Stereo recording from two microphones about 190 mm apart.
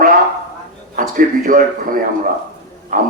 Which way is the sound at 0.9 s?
45° right (ahead or behind).